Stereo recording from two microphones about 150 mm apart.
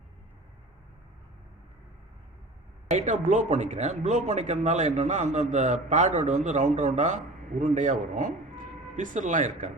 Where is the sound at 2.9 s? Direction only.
55° right (ahead or behind).